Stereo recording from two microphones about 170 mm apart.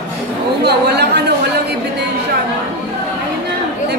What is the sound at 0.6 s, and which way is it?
Speech, 80° right.